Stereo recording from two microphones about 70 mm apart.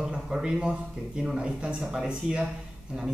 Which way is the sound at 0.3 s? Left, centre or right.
Centre.